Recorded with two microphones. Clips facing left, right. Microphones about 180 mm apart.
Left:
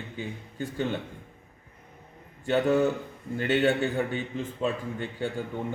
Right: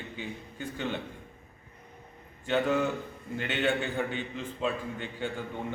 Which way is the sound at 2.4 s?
45° left (ahead or behind).